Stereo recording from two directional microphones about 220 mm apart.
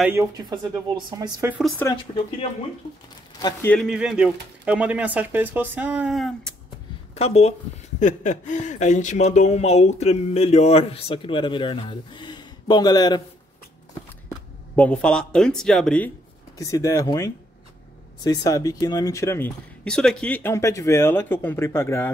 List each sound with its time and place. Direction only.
0.0 s speech: 10° right (ahead or behind)
1.6 s speech: 10° left (ahead or behind)
3.3 s speech: 15° left (ahead or behind)
3.7 s speech: 5° right (ahead or behind)
7.2 s speech: 30° left (ahead or behind)
14.3 s speech: 5° left (ahead or behind)
16.5 s speech: 15° left (ahead or behind)